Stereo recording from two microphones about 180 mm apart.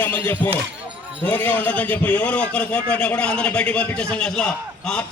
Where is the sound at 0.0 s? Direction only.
10° left (ahead or behind).